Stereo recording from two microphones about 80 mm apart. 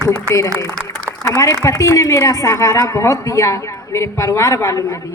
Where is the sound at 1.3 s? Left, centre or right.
Left.